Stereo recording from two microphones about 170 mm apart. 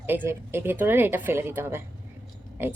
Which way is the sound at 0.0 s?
10° right (ahead or behind).